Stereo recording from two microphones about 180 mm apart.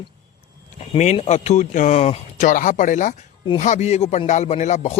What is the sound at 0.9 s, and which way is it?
Speech, 40° left (ahead or behind).